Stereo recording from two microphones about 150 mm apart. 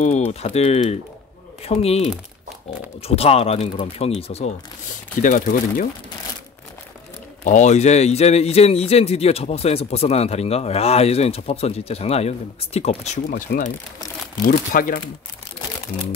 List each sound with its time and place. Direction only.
0.3 s a man's voice: 45° left (ahead or behind)
5.2 s speech: 60° left (ahead or behind)
7.4 s a man's voice: 50° left (ahead or behind)
13.3 s speech: 80° left
14.4 s speech: 65° left (ahead or behind)